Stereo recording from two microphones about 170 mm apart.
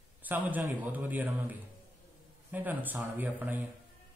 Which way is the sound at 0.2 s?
10° right (ahead or behind).